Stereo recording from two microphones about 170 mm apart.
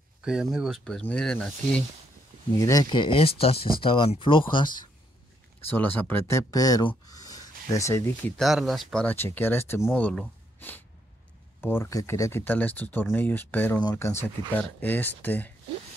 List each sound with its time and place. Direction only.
0.2 s speech: 5° right (ahead or behind)
2.6 s speech: 20° left (ahead or behind)
5.7 s speech: 10° left (ahead or behind)
7.1 s a sound: 20° left (ahead or behind)
7.7 s speech: 15° left (ahead or behind)
8.4 s speech: centre (ahead or behind)